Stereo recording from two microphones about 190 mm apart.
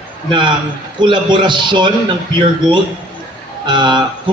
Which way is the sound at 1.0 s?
25° right (ahead or behind).